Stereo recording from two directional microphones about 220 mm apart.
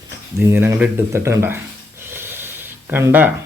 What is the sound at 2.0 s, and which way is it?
Snort, 10° right (ahead or behind).